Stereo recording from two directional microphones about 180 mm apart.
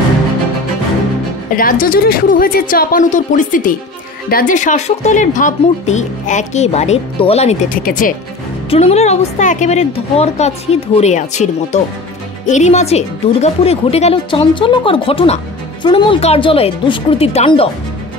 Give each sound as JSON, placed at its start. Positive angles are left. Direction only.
{"t": 1.6, "sound": "a woman's voice", "side_deg": 50}
{"t": 7.7, "sound": "a woman's voice", "side_deg": 50}
{"t": 8.6, "sound": "speech", "side_deg": 35}